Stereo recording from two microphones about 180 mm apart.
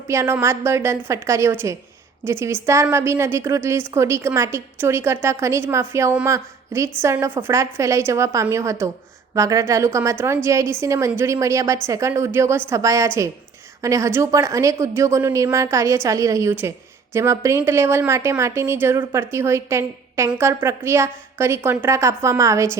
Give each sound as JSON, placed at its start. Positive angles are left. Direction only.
{"t": 0.1, "sound": "a woman's voice", "side_deg": -15}